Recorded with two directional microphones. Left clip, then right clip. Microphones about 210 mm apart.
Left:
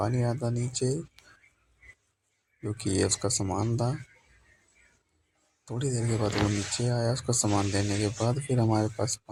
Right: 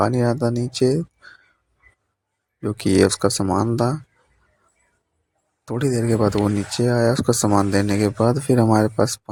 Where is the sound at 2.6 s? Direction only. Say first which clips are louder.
Right 12 dB; 45° right (ahead or behind).